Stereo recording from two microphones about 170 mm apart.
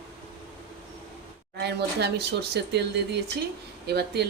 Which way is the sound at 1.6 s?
80° right.